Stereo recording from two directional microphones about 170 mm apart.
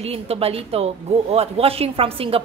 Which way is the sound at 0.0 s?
35° right (ahead or behind).